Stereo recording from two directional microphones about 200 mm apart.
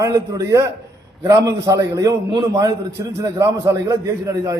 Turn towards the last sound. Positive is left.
turn(degrees=-15)  # may be behind; listen again after turning